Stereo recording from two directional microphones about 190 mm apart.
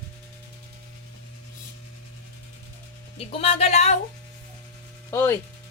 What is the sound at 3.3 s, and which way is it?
Speech, 30° left (ahead or behind).